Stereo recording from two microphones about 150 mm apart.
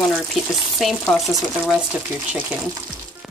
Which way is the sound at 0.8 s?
Centre (ahead or behind).